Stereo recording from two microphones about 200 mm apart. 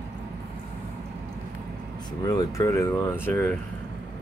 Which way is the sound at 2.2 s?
20° left (ahead or behind).